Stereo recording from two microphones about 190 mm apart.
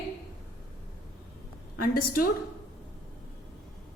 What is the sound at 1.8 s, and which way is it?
Speech, 50° left (ahead or behind).